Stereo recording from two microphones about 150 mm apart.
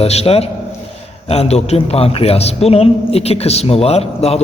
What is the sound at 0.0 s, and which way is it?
A man's voice, 45° left (ahead or behind).